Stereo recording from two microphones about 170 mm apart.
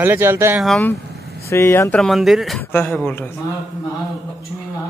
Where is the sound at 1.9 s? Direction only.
5° left (ahead or behind).